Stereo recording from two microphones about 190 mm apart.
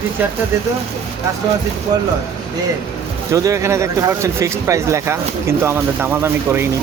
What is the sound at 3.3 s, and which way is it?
Speech, 15° right (ahead or behind).